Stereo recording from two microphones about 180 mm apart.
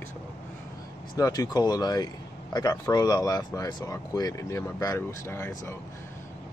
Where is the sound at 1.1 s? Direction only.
20° left (ahead or behind).